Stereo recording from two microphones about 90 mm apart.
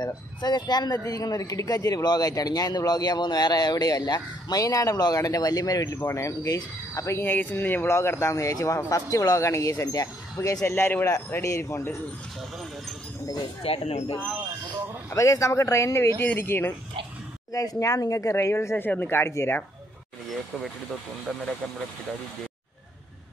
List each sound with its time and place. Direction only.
0.0 s speech: 50° left (ahead or behind); by 7.2 s 35° left (ahead or behind)
7.2 s speech: 20° left (ahead or behind); by 10.6 s 40° left (ahead or behind)
10.6 s speech: 25° left (ahead or behind)
13.6 s speech: 90° left
15.0 s speech: 35° left (ahead or behind)
17.5 s speech: 40° left (ahead or behind)